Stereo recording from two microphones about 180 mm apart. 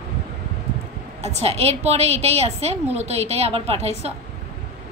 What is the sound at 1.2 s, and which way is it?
A woman's voice, 35° right (ahead or behind).